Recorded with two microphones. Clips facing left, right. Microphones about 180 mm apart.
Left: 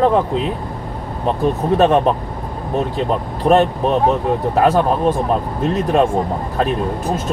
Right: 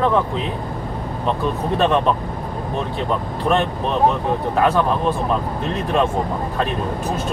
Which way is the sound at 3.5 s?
40° left (ahead or behind).